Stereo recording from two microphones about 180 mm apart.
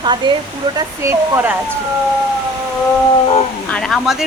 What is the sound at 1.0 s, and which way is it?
Speech, 10° right (ahead or behind).